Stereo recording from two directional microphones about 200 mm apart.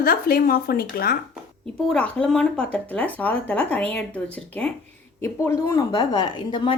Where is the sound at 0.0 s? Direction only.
50° left (ahead or behind).